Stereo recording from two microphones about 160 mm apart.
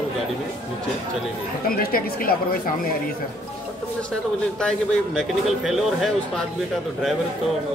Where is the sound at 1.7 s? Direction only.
65° left (ahead or behind).